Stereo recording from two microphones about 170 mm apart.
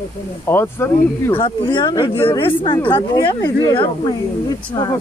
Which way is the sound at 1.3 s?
30° left (ahead or behind).